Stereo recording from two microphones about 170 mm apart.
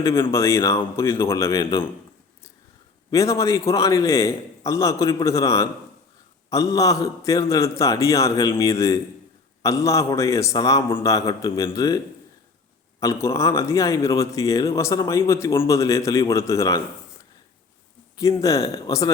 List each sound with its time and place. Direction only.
0.3 s a man's voice: 15° left (ahead or behind)
3.1 s a man's voice: 20° left (ahead or behind)
13.0 s a man's voice: 15° left (ahead or behind)
18.2 s a man's voice: 20° left (ahead or behind)